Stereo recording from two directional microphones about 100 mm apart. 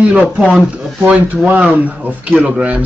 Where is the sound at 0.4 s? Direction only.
5° right (ahead or behind).